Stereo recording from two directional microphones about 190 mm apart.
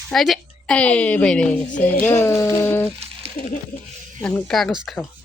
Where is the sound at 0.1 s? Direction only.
Centre (ahead or behind).